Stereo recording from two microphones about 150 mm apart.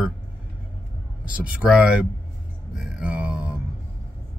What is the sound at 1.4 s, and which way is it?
Speech, 10° right (ahead or behind).